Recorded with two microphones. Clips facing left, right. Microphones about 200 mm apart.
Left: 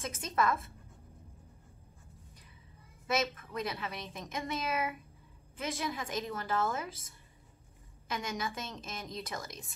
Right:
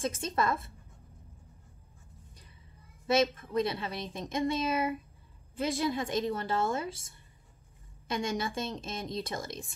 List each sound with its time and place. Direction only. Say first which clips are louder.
0.0 s a woman's voice: right 2 dB; 30° right (ahead or behind)
3.1 s a woman's voice: right 6 dB; 30° right (ahead or behind)
8.1 s a woman's voice: right 5 dB; 30° right (ahead or behind)